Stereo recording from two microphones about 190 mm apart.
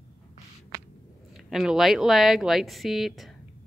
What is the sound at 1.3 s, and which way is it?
Speech, centre (ahead or behind).